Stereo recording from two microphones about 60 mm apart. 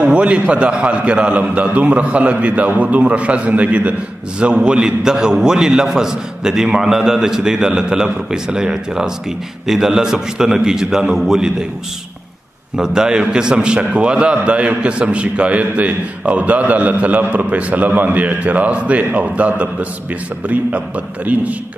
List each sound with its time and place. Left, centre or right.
0.0 s a man's voice: centre
12.7 s a man's voice: centre